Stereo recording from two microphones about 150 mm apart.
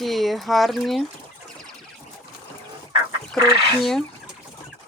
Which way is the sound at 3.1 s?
30° right (ahead or behind).